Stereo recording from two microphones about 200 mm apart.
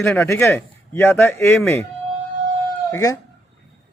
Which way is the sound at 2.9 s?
15° left (ahead or behind).